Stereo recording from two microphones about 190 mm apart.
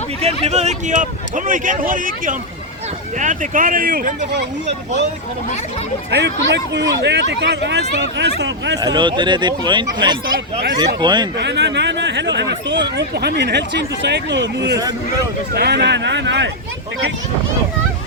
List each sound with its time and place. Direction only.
0.4 s speech: 35° right (ahead or behind)
6.1 s speech: 65° right (ahead or behind)
8.8 s speech: 25° right (ahead or behind)
11.3 s speech: 65° right (ahead or behind)